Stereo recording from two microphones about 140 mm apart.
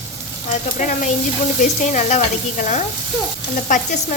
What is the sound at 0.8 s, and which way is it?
Sizzle, 65° left (ahead or behind).